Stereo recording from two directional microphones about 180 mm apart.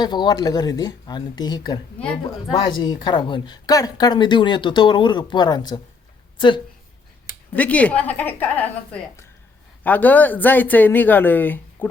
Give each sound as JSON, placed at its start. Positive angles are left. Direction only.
{"t": 0.0, "sound": "speech", "side_deg": 25}
{"t": 2.8, "sound": "a woman's voice", "side_deg": 25}
{"t": 7.5, "sound": "speech", "side_deg": 10}